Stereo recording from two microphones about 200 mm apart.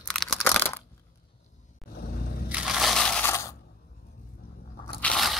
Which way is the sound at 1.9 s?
50° left (ahead or behind).